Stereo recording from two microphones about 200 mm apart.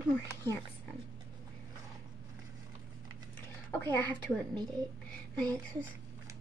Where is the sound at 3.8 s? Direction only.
10° left (ahead or behind).